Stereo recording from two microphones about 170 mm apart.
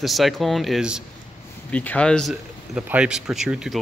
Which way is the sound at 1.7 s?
10° left (ahead or behind).